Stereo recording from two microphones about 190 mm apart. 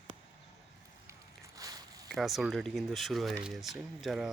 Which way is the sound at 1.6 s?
20° right (ahead or behind).